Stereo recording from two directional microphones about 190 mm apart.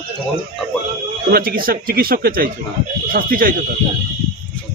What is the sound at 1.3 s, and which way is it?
Speech, 50° right (ahead or behind).